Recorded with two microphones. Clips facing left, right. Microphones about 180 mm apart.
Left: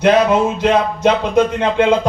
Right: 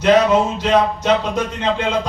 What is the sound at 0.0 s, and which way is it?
Music, 55° left (ahead or behind).